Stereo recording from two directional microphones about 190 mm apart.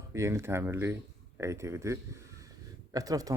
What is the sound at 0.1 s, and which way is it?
Speech, 15° right (ahead or behind).